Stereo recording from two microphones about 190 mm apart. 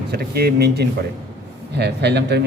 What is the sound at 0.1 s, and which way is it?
A man's voice, 55° right (ahead or behind).